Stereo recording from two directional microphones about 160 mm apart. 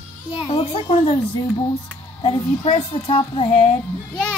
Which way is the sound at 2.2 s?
35° left (ahead or behind).